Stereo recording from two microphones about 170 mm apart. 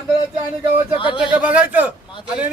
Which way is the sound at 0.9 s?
30° left (ahead or behind).